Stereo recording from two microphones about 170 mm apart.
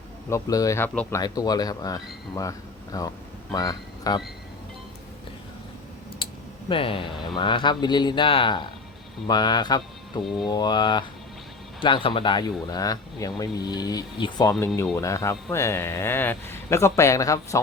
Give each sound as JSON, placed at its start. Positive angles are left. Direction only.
{"t": 0.3, "sound": "a man's voice", "side_deg": 20}
{"t": 6.7, "sound": "speech", "side_deg": 30}